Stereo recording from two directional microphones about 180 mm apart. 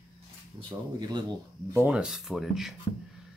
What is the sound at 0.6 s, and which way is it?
Speech, 25° right (ahead or behind).